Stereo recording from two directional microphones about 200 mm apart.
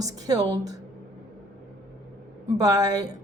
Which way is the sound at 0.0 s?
20° right (ahead or behind).